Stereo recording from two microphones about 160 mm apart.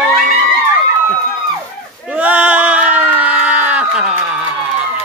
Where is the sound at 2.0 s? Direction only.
10° right (ahead or behind).